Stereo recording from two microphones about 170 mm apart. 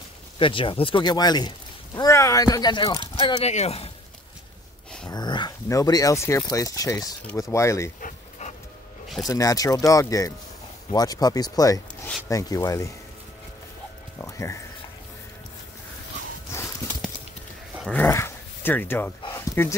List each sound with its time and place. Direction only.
0.4 s speech: 30° left (ahead or behind)
5.0 s speech: 25° left (ahead or behind)
8.0 s dog: 45° left (ahead or behind)
9.3 s speech: 20° left (ahead or behind)
14.1 s music: 15° left (ahead or behind)
16.5 s horse: 15° left (ahead or behind)
17.9 s dog: 15° left (ahead or behind)
19.2 s a sound: 15° left (ahead or behind)